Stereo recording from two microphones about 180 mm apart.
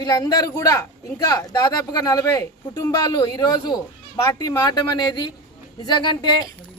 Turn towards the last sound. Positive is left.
turn(degrees=25)  # may be behind; listen again after turning